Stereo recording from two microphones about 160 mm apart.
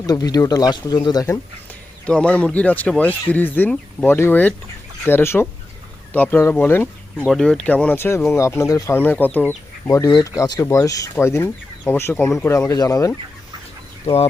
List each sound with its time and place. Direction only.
0.0 s speech: 25° left (ahead or behind)
2.0 s speech: 5° left (ahead or behind)
14.0 s speech: 40° left (ahead or behind)